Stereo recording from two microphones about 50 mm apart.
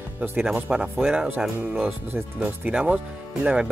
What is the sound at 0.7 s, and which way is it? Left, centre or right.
Speech, centre.